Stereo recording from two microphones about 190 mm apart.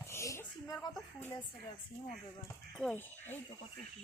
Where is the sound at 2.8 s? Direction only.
5° left (ahead or behind).